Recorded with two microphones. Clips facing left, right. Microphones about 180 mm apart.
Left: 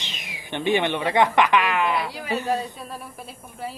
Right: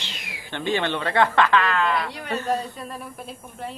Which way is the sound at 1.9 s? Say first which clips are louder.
Left 1 dB; centre (ahead or behind).